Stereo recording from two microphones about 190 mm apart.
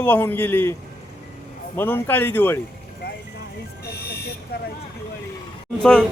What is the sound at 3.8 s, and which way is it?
Buzzer, 55° left (ahead or behind).